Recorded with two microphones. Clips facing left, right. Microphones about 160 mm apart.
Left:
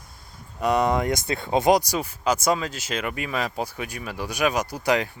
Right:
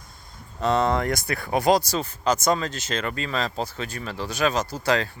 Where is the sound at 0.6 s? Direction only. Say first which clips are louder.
Even; 15° left (ahead or behind).